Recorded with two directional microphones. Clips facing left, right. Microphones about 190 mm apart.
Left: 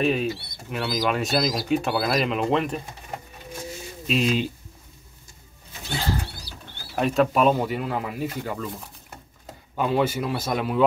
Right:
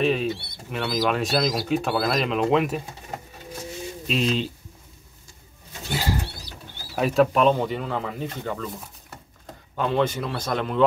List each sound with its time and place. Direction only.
0.0 s speech: centre (ahead or behind)
4.1 s a man's voice: 5° left (ahead or behind)
5.9 s bird flight: 10° right (ahead or behind)
6.5 s mechanisms: 35° left (ahead or behind)
7.0 s a man's voice: centre (ahead or behind)